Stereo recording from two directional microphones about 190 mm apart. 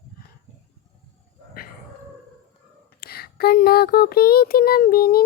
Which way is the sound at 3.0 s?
55° left (ahead or behind).